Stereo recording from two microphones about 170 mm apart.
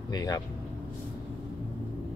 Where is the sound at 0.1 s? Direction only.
20° left (ahead or behind).